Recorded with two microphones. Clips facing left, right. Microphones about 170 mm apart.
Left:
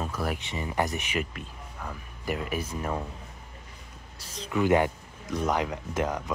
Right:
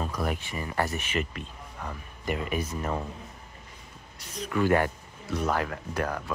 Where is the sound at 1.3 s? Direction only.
Centre (ahead or behind).